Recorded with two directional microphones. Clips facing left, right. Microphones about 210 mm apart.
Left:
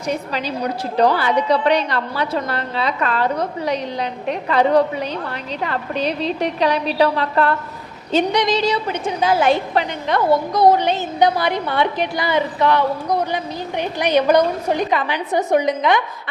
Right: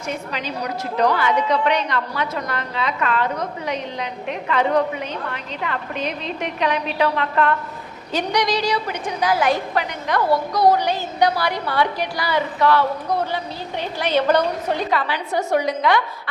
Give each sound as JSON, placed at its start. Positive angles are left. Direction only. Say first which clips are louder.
{"t": 0.3, "sound": "a woman's voice", "louder": "left 4 dB", "side_deg": 35}
{"t": 8.1, "sound": "a woman's voice", "louder": "left 4 dB", "side_deg": 25}